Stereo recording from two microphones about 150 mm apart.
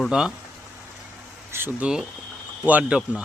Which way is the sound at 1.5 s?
15° right (ahead or behind).